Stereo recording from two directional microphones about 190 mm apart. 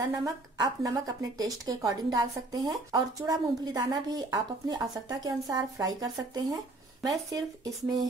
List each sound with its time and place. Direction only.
0.1 s a woman's voice: 20° right (ahead or behind)